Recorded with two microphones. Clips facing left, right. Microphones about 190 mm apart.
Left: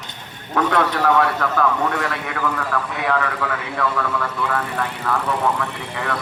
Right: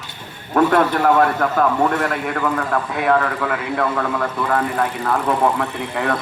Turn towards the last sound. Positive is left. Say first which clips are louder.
# right 5 dB
turn(degrees=-55)  # may be behind; listen again after turning